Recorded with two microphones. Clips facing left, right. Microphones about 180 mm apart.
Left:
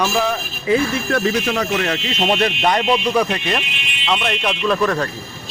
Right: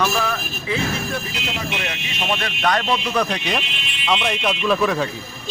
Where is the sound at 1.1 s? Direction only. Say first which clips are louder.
Left 9 dB; 90° left; by 2.1 s 60° left (ahead or behind).